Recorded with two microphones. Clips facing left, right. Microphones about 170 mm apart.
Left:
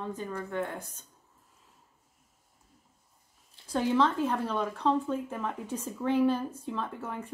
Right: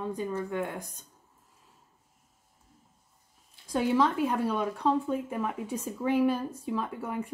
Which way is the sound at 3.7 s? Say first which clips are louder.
Right 1 dB; 10° right (ahead or behind).